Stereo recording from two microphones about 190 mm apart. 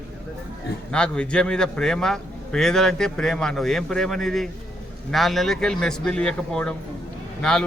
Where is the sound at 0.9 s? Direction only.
5° left (ahead or behind).